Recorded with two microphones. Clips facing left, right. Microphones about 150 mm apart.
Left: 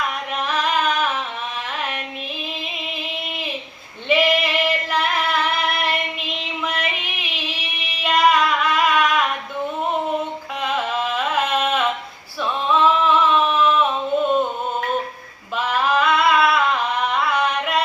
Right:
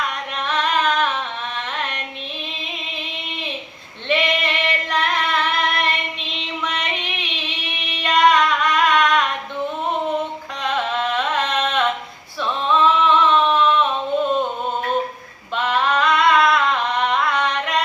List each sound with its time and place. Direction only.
0.4 s a sound: 5° left (ahead or behind)
4.1 s singing: 5° left (ahead or behind)
6.7 s music: 5° left (ahead or behind)
7.9 s female singing: 5° left (ahead or behind)
10.6 s music: 5° left (ahead or behind)
12.4 s female singing: 5° left (ahead or behind)
15.5 s singing: 5° left (ahead or behind)